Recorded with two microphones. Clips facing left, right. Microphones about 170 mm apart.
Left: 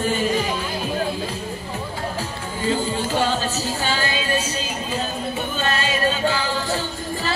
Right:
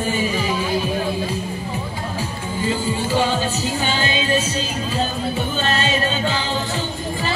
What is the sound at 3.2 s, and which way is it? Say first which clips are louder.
Music: right 2 dB; 15° right (ahead or behind).